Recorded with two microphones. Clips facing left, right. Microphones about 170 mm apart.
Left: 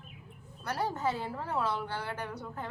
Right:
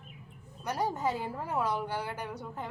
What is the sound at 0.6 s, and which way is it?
A woman's voice, 10° right (ahead or behind).